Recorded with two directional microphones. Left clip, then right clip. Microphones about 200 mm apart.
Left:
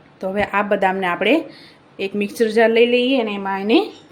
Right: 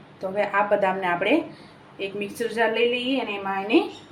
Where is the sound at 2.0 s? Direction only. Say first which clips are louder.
Left 8 dB; 60° left (ahead or behind).